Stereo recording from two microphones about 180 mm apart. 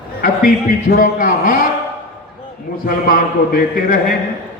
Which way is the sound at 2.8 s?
50° left (ahead or behind).